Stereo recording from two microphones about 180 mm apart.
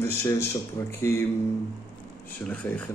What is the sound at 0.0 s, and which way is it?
Speech, 10° left (ahead or behind).